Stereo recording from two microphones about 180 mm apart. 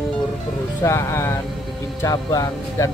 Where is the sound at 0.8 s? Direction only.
15° left (ahead or behind).